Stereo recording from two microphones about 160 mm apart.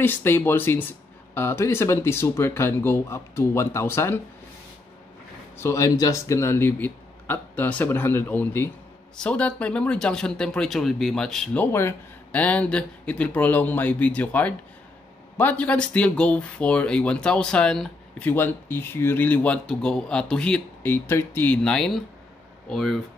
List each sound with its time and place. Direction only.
0.0 s speech: 15° left (ahead or behind)
5.6 s speech: 20° left (ahead or behind); by 22.9 s centre (ahead or behind)